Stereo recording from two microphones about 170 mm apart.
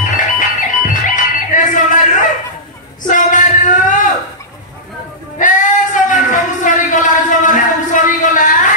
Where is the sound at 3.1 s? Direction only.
50° left (ahead or behind).